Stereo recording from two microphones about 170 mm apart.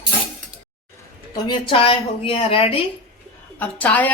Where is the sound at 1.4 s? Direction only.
30° left (ahead or behind).